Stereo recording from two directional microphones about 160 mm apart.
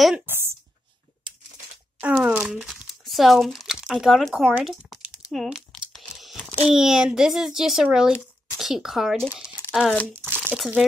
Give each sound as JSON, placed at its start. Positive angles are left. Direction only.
{"t": 2.0, "sound": "speech", "side_deg": -5}
{"t": 5.9, "sound": "tearing", "side_deg": 5}
{"t": 6.7, "sound": "a child's voice", "side_deg": -5}